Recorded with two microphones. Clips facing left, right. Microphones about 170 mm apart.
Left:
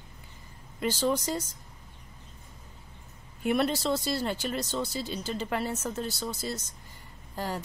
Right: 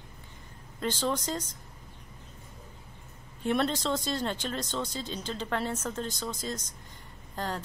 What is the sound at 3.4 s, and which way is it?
Speech, 5° left (ahead or behind).